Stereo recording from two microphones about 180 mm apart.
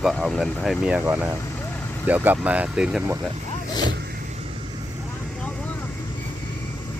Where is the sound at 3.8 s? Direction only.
70° right (ahead or behind).